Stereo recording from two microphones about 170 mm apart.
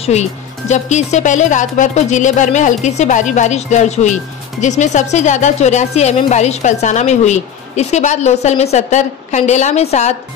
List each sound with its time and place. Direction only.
0.0 s speech: 40° left (ahead or behind)